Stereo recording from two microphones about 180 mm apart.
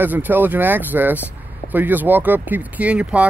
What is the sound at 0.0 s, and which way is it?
Speech, 10° right (ahead or behind).